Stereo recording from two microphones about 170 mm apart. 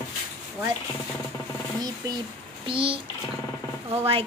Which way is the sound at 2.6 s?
30° right (ahead or behind).